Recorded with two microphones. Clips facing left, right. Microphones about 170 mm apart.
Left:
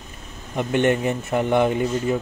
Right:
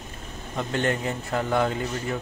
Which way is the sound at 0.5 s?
20° left (ahead or behind).